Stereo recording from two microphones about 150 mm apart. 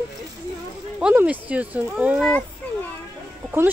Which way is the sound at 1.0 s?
10° right (ahead or behind).